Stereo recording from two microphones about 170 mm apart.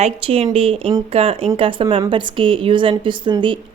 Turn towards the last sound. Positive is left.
turn(degrees=-30)  # may be behind; listen again after turning